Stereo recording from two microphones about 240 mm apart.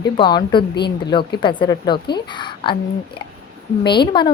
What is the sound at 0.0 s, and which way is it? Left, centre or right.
A woman's voice, centre.